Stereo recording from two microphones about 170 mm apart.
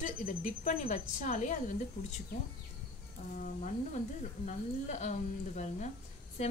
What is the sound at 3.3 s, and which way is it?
A woman's voice, 50° left (ahead or behind).